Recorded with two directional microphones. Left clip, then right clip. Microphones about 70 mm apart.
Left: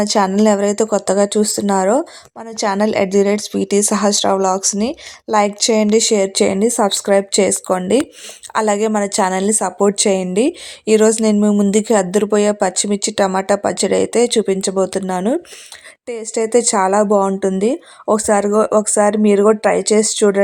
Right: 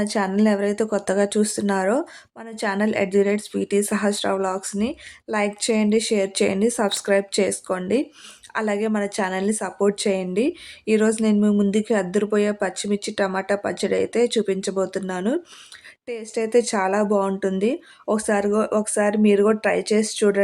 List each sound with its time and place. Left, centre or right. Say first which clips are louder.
0.0 s a woman's voice: left 8 dB; left
11.3 s speech: left 5 dB; left
11.7 s speech: left 7 dB; left
16.0 s speech: left 6 dB; left